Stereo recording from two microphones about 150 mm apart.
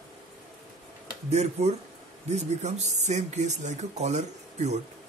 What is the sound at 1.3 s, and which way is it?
Speech, 45° right (ahead or behind).